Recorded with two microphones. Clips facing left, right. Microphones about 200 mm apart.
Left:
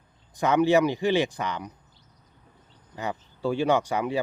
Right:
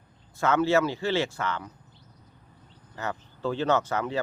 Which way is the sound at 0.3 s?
15° left (ahead or behind).